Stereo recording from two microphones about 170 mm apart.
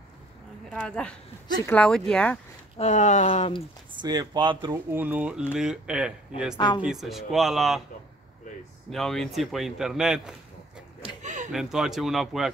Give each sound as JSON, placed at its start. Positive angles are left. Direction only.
{"t": 0.7, "sound": "a woman's voice", "side_deg": 5}
{"t": 2.8, "sound": "speech", "side_deg": 45}
{"t": 4.0, "sound": "speech", "side_deg": -25}
{"t": 4.9, "sound": "speech", "side_deg": -10}
{"t": 6.5, "sound": "speech", "side_deg": 25}
{"t": 6.8, "sound": "speech", "side_deg": 0}
{"t": 8.9, "sound": "speech", "side_deg": 0}
{"t": 11.0, "sound": "a sound", "side_deg": -45}
{"t": 11.5, "sound": "speech", "side_deg": 0}